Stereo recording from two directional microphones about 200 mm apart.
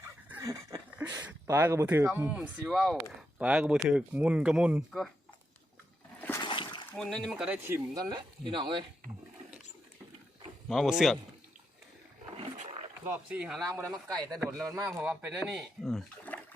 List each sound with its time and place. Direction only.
0.3 s speech: 10° right (ahead or behind)
6.4 s splash: 25° left (ahead or behind)
6.9 s speech: 5° left (ahead or behind)
7.9 s speech: 25° right (ahead or behind)
10.7 s speech: centre (ahead or behind)
12.4 s roaring cats: 35° right (ahead or behind)
13.1 s speech: 5° right (ahead or behind)
14.6 s speech: 15° right (ahead or behind); by 16.4 s 5° left (ahead or behind)